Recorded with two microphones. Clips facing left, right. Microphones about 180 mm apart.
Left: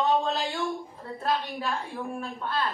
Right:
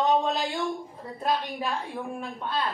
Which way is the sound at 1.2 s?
15° right (ahead or behind).